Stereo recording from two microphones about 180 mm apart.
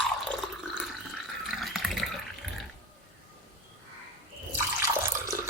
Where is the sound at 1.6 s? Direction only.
Centre (ahead or behind).